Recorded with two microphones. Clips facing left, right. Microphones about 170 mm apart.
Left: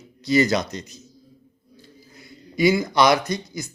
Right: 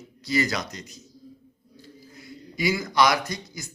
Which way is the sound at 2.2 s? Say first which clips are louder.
Left 7 dB; 25° left (ahead or behind).